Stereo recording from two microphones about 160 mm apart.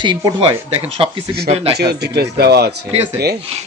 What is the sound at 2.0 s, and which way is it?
Speech, 90° right.